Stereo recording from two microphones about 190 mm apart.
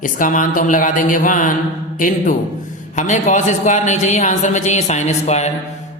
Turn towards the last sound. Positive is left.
turn(degrees=35)  # may be behind; listen again after turning